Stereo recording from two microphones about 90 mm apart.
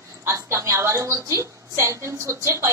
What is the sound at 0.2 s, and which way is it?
A woman's voice, 30° right (ahead or behind).